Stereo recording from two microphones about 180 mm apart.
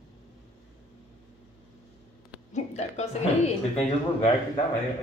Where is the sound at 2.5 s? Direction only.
40° left (ahead or behind).